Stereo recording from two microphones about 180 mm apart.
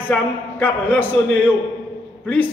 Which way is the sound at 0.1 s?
10° left (ahead or behind).